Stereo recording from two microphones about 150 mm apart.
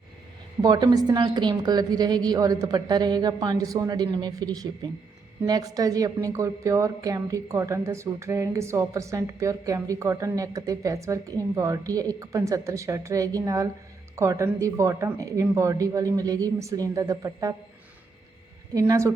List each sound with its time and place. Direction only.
0.6 s a woman's voice: 25° right (ahead or behind)
18.7 s a woman's voice: 20° right (ahead or behind)